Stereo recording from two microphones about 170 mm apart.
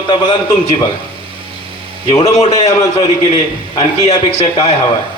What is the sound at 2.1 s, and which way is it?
Speech, 35° left (ahead or behind).